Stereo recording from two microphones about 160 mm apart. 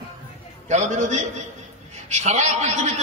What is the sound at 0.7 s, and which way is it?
A man's voice, 45° right (ahead or behind).